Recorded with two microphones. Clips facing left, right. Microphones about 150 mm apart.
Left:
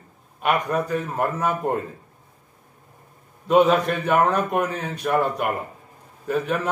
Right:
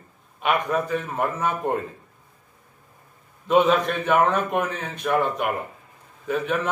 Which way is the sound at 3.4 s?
5° left (ahead or behind).